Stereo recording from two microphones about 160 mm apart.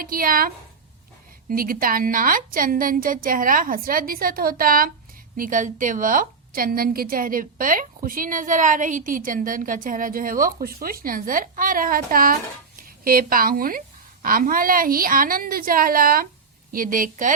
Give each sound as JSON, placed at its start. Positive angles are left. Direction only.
{"t": 0.0, "sound": "a woman's voice", "side_deg": -60}